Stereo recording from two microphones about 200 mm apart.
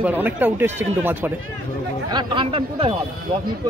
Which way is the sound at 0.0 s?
10° right (ahead or behind).